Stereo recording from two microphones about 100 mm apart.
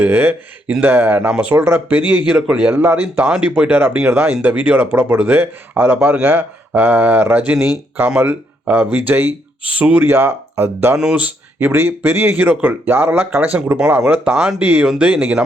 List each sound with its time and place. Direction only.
0.0 s speech: 20° right (ahead or behind)
10.9 s speech: 10° right (ahead or behind)